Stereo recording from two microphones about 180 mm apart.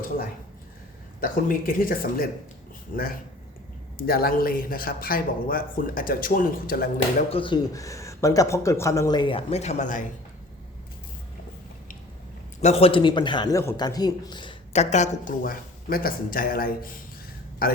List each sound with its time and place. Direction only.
1.2 s a man's voice: 50° left (ahead or behind)
7.3 s speech: 30° left (ahead or behind)
12.6 s speech: 35° left (ahead or behind)
14.8 s a man's voice: 40° left (ahead or behind)